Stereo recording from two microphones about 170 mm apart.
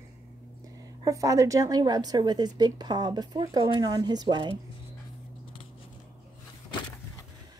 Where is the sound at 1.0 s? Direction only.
20° right (ahead or behind).